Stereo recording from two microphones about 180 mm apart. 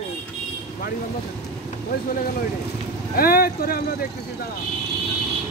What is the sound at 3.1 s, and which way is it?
Speech, 55° left (ahead or behind).